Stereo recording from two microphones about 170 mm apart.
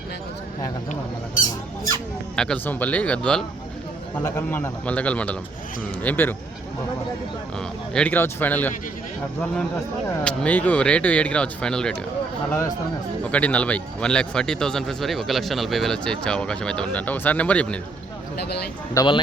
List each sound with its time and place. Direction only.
2.3 s speech: 5° left (ahead or behind)
7.9 s speech: 10° left (ahead or behind)
10.2 s speech: 10° left (ahead or behind)
13.3 s a man's voice: 10° left (ahead or behind)
18.9 s speech: 25° left (ahead or behind)